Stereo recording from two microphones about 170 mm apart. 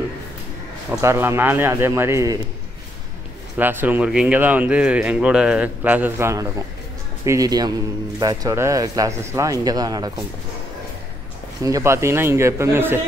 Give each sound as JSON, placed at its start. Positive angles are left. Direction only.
{"t": 1.0, "sound": "speech", "side_deg": -15}
{"t": 3.5, "sound": "speech", "side_deg": -10}
{"t": 11.6, "sound": "speech", "side_deg": -20}